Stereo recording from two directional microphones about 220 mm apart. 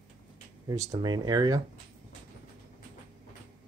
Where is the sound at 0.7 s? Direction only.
15° right (ahead or behind).